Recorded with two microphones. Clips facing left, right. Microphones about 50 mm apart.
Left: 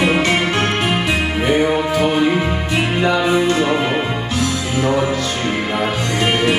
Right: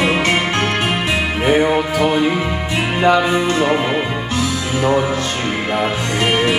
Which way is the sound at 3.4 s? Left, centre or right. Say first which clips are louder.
Even; right.